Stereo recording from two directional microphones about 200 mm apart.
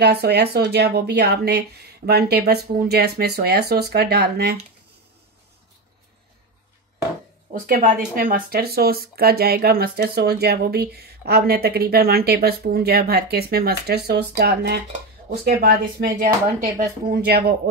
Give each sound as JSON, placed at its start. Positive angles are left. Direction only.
{"t": 0.0, "sound": "speech", "side_deg": -55}
{"t": 7.5, "sound": "speech", "side_deg": -45}